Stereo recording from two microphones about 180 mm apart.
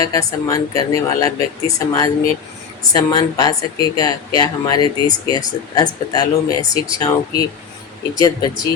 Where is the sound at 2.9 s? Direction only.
20° left (ahead or behind).